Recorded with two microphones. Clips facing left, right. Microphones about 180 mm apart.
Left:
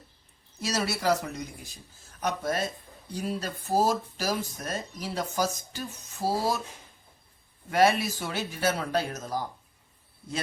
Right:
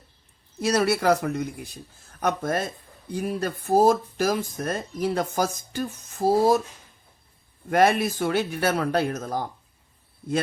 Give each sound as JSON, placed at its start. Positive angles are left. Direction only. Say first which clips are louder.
{"t": 0.6, "sound": "speech", "louder": "right 7 dB", "side_deg": -55}
{"t": 7.7, "sound": "speech", "louder": "right 3 dB", "side_deg": -55}